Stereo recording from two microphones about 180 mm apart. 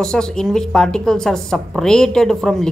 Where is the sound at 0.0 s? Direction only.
5° left (ahead or behind).